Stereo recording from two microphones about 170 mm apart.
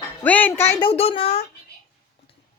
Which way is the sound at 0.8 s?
35° left (ahead or behind).